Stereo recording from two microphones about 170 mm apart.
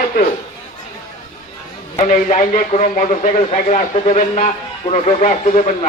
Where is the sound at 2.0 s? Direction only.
45° left (ahead or behind).